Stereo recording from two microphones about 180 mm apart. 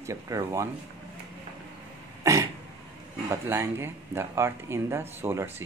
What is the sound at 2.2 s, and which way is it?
Cough, 15° right (ahead or behind).